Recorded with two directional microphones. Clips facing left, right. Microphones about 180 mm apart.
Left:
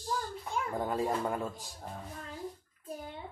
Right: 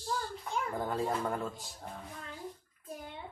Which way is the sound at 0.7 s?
15° left (ahead or behind).